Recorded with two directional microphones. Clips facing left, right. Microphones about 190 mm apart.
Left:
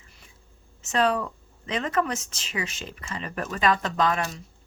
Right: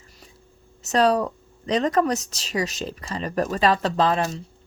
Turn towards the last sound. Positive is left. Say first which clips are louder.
# right 4 dB
turn(degrees=-30)  # may be behind; listen again after turning